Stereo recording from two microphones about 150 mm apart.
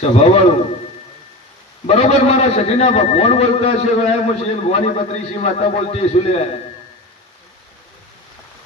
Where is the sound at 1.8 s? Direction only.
45° left (ahead or behind).